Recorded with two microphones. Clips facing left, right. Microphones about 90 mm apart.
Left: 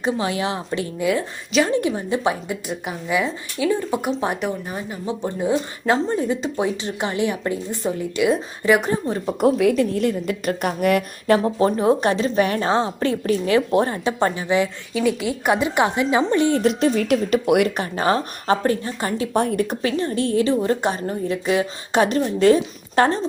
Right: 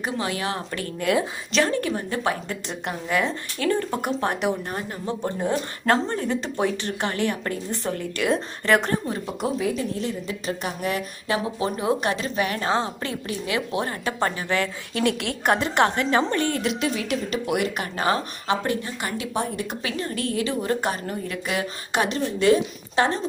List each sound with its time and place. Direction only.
0.0 s a woman's voice: 25° left (ahead or behind)
2.6 s a woman's voice: 5° left (ahead or behind)
9.4 s a woman's voice: 70° left (ahead or behind); by 11.9 s 45° left (ahead or behind)
11.9 s a woman's voice: 35° left (ahead or behind)
13.9 s a woman's voice: 25° left (ahead or behind)
15.0 s a woman's voice: 5° left (ahead or behind)
16.6 s speech: 40° left (ahead or behind); by 17.7 s 55° left (ahead or behind)
17.7 s a woman's voice: 30° left (ahead or behind)
22.1 s a woman's voice: 40° left (ahead or behind)